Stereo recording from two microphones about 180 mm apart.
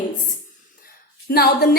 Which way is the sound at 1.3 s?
60° left (ahead or behind).